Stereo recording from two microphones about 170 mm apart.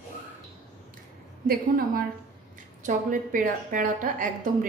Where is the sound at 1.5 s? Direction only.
60° right (ahead or behind).